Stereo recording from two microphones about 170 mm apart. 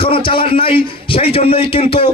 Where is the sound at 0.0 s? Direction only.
30° left (ahead or behind).